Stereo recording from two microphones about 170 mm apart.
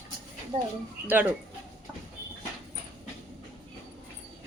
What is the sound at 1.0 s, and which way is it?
Speech, 10° right (ahead or behind).